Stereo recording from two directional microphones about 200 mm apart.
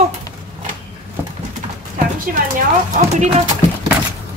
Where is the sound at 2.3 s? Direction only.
45° right (ahead or behind).